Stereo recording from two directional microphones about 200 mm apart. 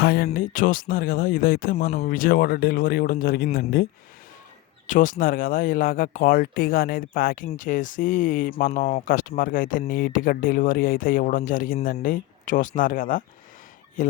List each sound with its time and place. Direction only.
0.0 s speech: 50° left (ahead or behind)
4.9 s speech: 40° left (ahead or behind)